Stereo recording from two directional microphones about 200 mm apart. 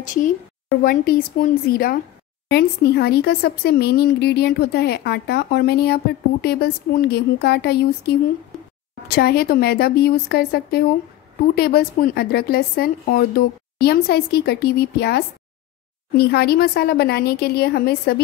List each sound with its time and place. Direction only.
0.0 s a woman's voice: 40° left (ahead or behind)